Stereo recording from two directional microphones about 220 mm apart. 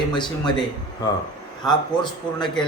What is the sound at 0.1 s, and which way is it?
Speech, 20° left (ahead or behind).